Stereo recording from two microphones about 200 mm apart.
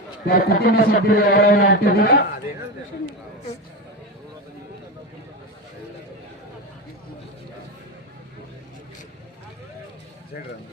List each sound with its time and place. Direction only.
0.3 s a man's voice: 50° left (ahead or behind)